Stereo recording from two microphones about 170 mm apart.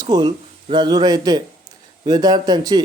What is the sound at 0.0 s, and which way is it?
Speech, 25° right (ahead or behind).